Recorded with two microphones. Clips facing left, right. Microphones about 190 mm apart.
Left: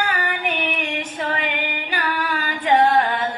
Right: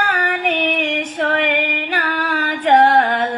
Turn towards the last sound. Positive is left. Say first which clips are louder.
# right 4 dB
turn(degrees=-75)  # may be behind; listen again after turning